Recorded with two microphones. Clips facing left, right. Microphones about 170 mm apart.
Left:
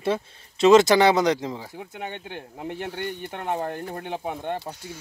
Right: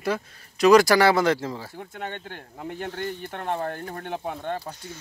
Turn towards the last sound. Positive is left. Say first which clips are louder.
# left 1 dB
turn(degrees=25)  # may be behind; listen again after turning